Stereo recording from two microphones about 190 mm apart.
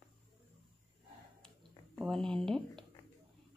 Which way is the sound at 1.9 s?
Centre (ahead or behind).